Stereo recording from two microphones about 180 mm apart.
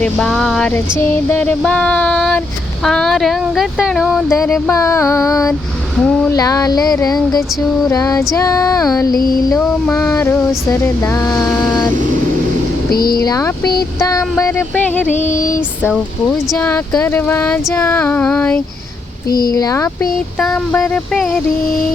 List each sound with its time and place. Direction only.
0.0 s a sound: 5° left (ahead or behind)
4.3 s speech: 15° left (ahead or behind)
6.0 s a sound: 5° left (ahead or behind)
6.3 s speech: 20° left (ahead or behind)
9.1 s female singing: 55° left (ahead or behind)
9.9 s speech: 15° left (ahead or behind)
12.9 s speech: 55° left (ahead or behind)
13.2 s speech: 20° left (ahead or behind)
15.3 s female singing: 50° left (ahead or behind)
16.6 s speech: 10° left (ahead or behind)
19.5 s speech: 20° left (ahead or behind)
20.4 s a sound: 5° left (ahead or behind)